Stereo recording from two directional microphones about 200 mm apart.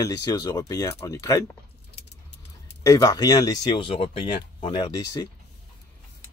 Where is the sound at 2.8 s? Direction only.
15° left (ahead or behind).